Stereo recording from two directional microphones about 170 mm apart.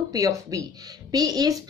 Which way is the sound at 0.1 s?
20° right (ahead or behind).